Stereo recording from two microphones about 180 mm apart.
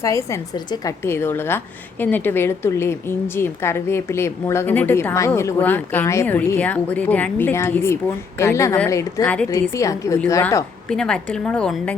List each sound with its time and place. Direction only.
0.0 s a woman's voice: 15° left (ahead or behind)
10.8 s a woman's voice: 5° left (ahead or behind)